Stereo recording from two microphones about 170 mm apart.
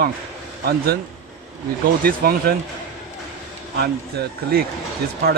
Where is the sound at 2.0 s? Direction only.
60° right (ahead or behind).